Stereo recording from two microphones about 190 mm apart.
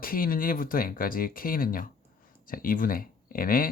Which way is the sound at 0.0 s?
50° left (ahead or behind).